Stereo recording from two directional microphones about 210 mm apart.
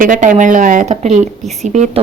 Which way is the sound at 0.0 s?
40° right (ahead or behind).